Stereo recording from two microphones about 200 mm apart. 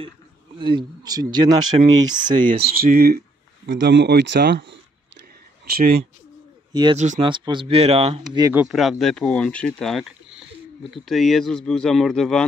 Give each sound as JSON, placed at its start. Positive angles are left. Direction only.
{"t": 0.6, "sound": "speech", "side_deg": -25}
{"t": 2.3, "sound": "speech", "side_deg": -45}
{"t": 6.7, "sound": "speech", "side_deg": -20}
{"t": 8.4, "sound": "speech", "side_deg": -15}
{"t": 8.6, "sound": "speech", "side_deg": 0}